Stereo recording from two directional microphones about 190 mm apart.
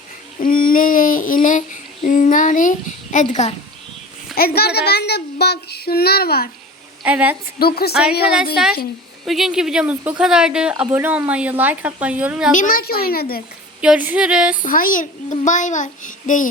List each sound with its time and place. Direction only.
0.3 s child singing: 45° left (ahead or behind)
2.0 s a sound: 40° left (ahead or behind)
4.4 s a child's voice: 55° left (ahead or behind)
7.0 s speech: 5° right (ahead or behind)
7.6 s a child's voice: 55° left (ahead or behind)
9.2 s speech: centre (ahead or behind)
12.5 s a child's voice: 45° left (ahead or behind)
13.8 s a sound: 5° right (ahead or behind)
14.6 s a child's voice: 45° left (ahead or behind)